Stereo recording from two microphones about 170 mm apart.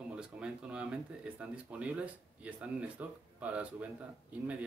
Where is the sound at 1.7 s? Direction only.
10° right (ahead or behind).